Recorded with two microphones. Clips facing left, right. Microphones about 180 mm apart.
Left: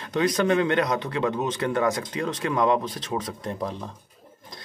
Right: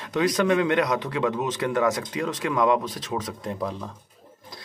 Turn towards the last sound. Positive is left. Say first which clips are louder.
# right 1 dB
turn(degrees=20)  # may be behind; listen again after turning